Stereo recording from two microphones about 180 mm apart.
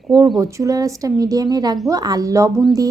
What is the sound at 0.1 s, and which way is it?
A woman's voice, 20° right (ahead or behind).